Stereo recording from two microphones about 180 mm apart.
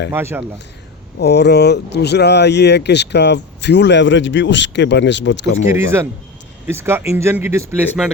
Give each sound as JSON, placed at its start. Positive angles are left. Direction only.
{"t": 0.1, "sound": "speech", "side_deg": -15}
{"t": 1.2, "sound": "speech", "side_deg": 65}
{"t": 5.7, "sound": "speech", "side_deg": -15}
{"t": 8.0, "sound": "a man's voice", "side_deg": 0}